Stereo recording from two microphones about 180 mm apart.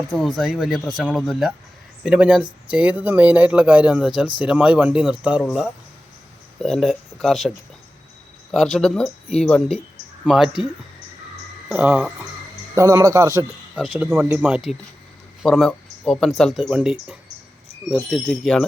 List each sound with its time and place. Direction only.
0.1 s speech: centre (ahead or behind)
8.5 s speech: centre (ahead or behind)
11.7 s speech: 5° right (ahead or behind)
13.7 s speech: 5° right (ahead or behind)